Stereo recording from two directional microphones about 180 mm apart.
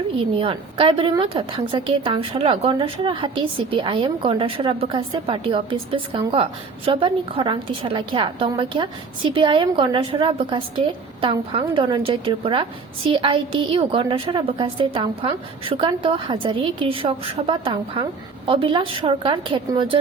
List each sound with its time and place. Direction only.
0.3 s a woman's voice: 30° right (ahead or behind)